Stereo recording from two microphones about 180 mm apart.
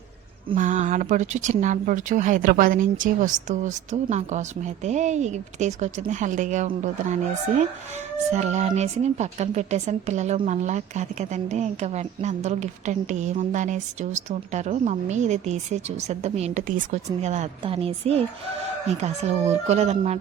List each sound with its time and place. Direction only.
0.5 s speech: 45° right (ahead or behind)
8.3 s speech: 40° right (ahead or behind)